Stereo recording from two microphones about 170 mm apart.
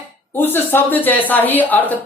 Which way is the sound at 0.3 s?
10° left (ahead or behind).